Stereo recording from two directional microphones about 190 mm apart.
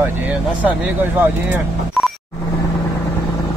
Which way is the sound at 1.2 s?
5° right (ahead or behind).